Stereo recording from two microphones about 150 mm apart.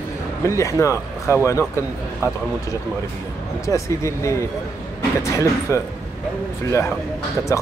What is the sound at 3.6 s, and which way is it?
Speech, 20° left (ahead or behind).